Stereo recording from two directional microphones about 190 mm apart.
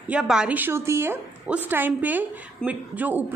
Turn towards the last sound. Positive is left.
turn(degrees=-10)  # may be behind; listen again after turning